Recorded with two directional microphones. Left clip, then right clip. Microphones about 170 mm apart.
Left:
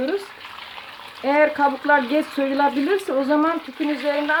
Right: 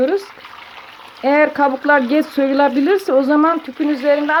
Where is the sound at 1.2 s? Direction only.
50° right (ahead or behind).